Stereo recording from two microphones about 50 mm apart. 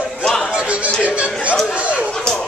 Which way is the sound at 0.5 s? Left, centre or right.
Right.